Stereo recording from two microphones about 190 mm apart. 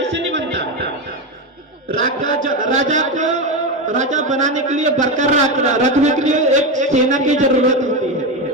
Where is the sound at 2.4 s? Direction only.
40° right (ahead or behind).